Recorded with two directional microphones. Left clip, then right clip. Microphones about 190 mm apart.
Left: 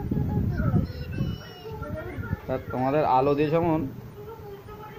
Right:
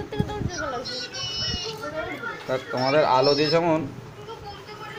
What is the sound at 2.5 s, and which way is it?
Speech, 10° left (ahead or behind).